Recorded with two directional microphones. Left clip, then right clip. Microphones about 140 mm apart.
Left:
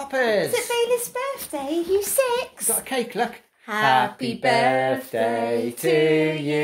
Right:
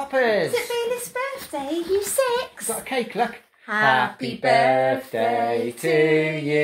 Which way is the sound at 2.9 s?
10° left (ahead or behind).